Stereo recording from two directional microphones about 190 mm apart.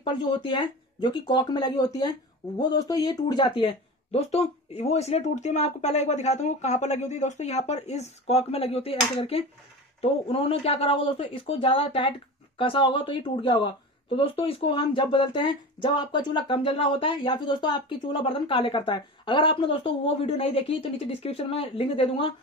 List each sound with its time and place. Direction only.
0.0 s speech: 25° left (ahead or behind)
4.1 s speech: 35° left (ahead or behind)